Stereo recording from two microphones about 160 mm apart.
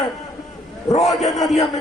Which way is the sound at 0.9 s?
20° left (ahead or behind).